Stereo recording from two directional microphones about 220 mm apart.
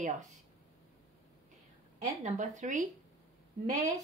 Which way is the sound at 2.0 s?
35° right (ahead or behind).